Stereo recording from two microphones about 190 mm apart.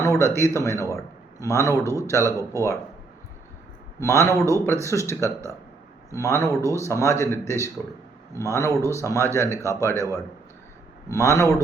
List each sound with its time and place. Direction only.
0.0 s a sound: 15° left (ahead or behind)
0.3 s speech: 15° left (ahead or behind)
0.7 s speech: 15° right (ahead or behind)
1.4 s speech: 15° left (ahead or behind)
1.8 s speech: 15° right (ahead or behind)
4.0 s speech: 15° left (ahead or behind)
5.2 s speech: 15° right (ahead or behind)
6.1 s speech: 15° left (ahead or behind)
9.9 s speech: 15° right (ahead or behind)
11.1 s speech: 15° left (ahead or behind)